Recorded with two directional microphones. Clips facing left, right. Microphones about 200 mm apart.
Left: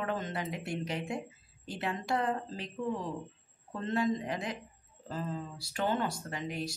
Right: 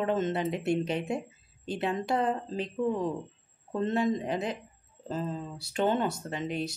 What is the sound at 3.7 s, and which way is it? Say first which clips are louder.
Speech: right 4 dB; 20° right (ahead or behind).